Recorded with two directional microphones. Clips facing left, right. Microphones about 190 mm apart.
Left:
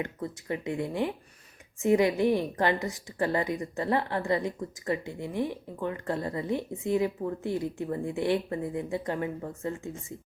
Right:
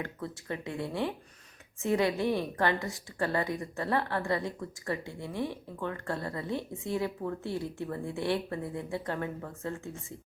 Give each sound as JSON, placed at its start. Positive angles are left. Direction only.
{"t": 0.0, "sound": "a woman's voice", "side_deg": 15}